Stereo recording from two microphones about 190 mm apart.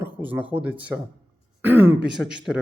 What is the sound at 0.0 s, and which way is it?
Speech, 10° right (ahead or behind).